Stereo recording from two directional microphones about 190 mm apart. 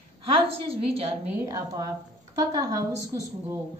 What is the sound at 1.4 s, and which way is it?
A woman's voice, 15° right (ahead or behind).